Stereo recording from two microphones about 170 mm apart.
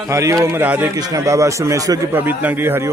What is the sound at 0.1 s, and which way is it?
A man's voice, 15° right (ahead or behind).